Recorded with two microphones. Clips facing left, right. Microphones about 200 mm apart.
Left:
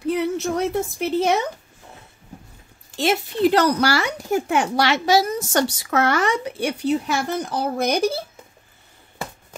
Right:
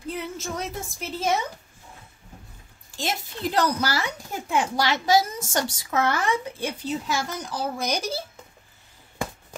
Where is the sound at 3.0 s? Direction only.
70° left (ahead or behind).